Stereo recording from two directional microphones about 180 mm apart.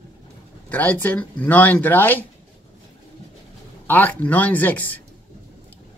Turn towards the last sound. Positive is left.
turn(degrees=10)  # may be behind; listen again after turning